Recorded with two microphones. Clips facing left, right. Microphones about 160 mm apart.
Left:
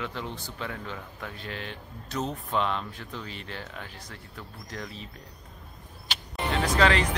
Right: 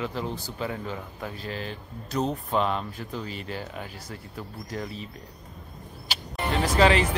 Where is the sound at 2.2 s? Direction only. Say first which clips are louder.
Right 4 dB; 35° right (ahead or behind).